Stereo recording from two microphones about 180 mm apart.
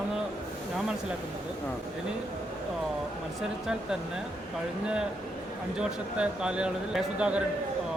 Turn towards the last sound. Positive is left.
turn(degrees=-5)  # may be behind; listen again after turning